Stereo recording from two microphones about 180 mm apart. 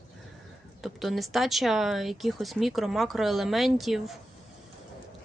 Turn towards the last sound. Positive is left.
turn(degrees=0)  # may be behind; listen again after turning